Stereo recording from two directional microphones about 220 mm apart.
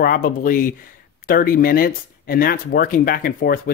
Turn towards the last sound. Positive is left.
turn(degrees=40)  # may be behind; listen again after turning